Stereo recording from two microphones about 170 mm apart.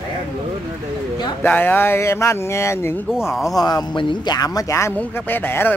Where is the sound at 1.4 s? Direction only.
10° left (ahead or behind).